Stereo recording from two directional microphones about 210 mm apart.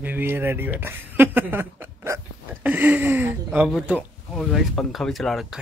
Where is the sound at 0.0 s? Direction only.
10° right (ahead or behind).